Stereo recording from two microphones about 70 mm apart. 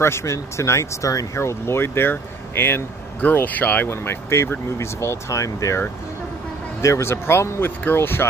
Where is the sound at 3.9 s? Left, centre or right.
Left.